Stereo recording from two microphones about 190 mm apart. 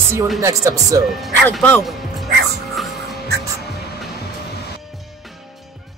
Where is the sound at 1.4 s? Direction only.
5° left (ahead or behind).